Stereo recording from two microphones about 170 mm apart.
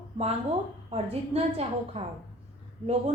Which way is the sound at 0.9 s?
35° right (ahead or behind).